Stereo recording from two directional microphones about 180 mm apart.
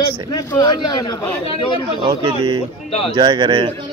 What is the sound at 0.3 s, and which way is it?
Speech, 20° left (ahead or behind).